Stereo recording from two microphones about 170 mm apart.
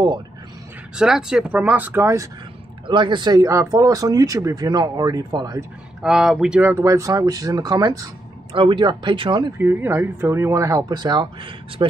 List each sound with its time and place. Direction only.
0.9 s speech: 5° right (ahead or behind)
2.9 s speech: 30° right (ahead or behind)
5.6 s speech: 5° right (ahead or behind); by 9.5 s 30° right (ahead or behind)
9.6 s speech: 10° right (ahead or behind); by 11.9 s 30° right (ahead or behind)